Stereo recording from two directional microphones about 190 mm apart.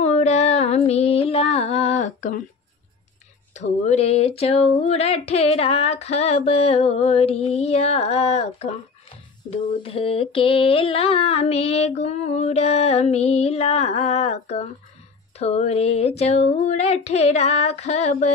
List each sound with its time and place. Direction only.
0.0 s female singing: 35° left (ahead or behind)
3.5 s female singing: 35° left (ahead or behind)